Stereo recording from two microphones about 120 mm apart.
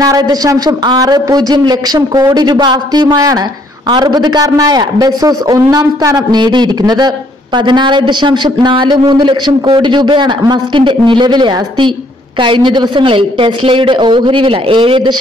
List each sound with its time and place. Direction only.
0.0 s a woman's voice: 30° right (ahead or behind)